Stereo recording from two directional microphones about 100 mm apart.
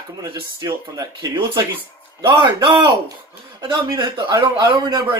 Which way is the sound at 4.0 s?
55° right (ahead or behind).